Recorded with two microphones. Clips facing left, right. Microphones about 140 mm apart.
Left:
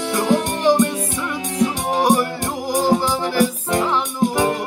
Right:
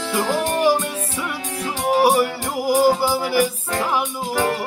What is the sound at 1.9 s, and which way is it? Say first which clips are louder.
Music: right 4 dB; 10° right (ahead or behind).